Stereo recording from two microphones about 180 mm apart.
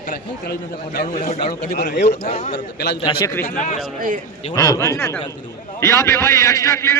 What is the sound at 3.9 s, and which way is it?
Speech, 50° right (ahead or behind).